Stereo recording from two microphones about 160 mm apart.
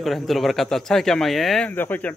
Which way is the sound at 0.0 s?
Centre (ahead or behind).